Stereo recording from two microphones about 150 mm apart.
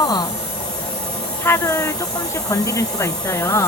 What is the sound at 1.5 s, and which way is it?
Speech, 20° left (ahead or behind).